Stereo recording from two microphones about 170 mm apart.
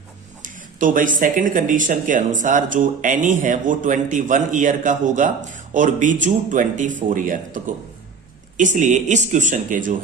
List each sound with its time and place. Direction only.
0.4 s speech: 50° right (ahead or behind)